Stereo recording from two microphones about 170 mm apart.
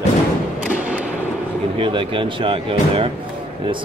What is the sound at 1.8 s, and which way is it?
Speech, 30° right (ahead or behind).